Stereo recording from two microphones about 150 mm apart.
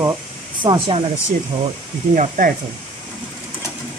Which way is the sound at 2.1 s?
60° right (ahead or behind).